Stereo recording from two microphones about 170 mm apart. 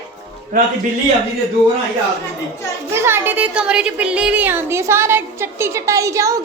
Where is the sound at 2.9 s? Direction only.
15° right (ahead or behind).